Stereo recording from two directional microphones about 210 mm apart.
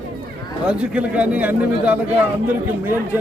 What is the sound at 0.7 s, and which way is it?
Speech, 5° right (ahead or behind).